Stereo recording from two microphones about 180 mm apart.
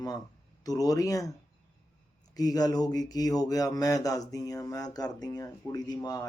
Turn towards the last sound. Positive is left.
turn(degrees=20)  # may be behind; listen again after turning